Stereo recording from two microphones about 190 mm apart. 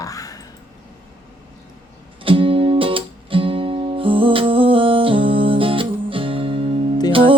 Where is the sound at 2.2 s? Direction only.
30° right (ahead or behind).